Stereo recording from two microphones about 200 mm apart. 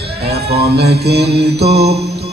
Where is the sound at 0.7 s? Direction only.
55° right (ahead or behind).